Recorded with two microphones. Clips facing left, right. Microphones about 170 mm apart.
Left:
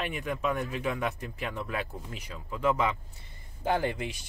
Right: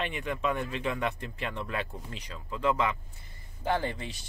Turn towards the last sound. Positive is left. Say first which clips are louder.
# left 2 dB
turn(degrees=15)  # may be behind; listen again after turning